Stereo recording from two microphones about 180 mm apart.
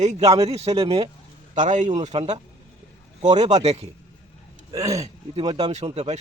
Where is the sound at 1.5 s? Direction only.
45° right (ahead or behind).